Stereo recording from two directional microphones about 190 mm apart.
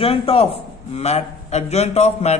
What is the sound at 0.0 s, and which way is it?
A man's voice, 30° left (ahead or behind).